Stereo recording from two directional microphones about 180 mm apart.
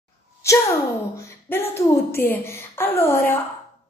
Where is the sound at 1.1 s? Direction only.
15° left (ahead or behind).